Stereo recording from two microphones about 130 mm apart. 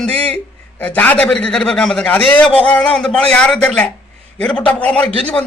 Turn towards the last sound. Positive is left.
turn(degrees=10)  # may be behind; listen again after turning